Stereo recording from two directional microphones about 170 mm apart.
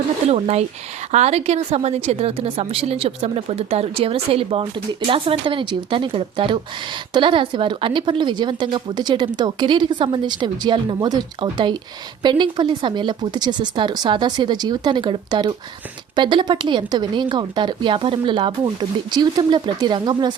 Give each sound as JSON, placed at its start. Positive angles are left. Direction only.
{"t": 0.3, "sound": "a woman's voice", "side_deg": -40}